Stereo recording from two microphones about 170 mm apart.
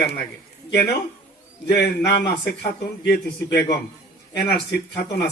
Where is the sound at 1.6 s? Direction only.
80° left.